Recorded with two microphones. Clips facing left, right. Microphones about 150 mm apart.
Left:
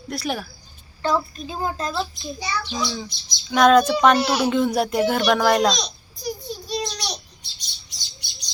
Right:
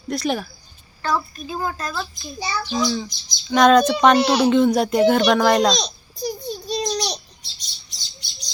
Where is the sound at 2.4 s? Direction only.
30° right (ahead or behind).